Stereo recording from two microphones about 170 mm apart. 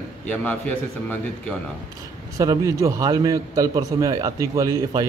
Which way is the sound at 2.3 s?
20° right (ahead or behind).